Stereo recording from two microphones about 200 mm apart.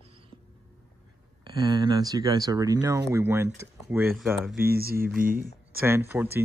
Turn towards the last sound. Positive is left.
turn(degrees=-10)  # may be behind; listen again after turning